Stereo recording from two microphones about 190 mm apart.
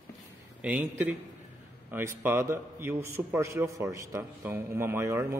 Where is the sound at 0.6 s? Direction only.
10° right (ahead or behind).